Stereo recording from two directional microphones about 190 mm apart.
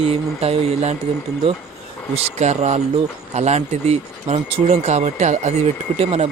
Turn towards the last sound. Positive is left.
turn(degrees=-35)  # may be behind; listen again after turning